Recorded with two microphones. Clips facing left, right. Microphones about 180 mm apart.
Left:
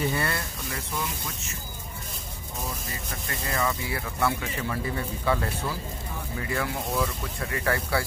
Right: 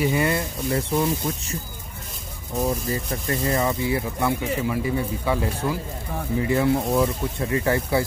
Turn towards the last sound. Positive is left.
turn(degrees=-20)  # may be behind; listen again after turning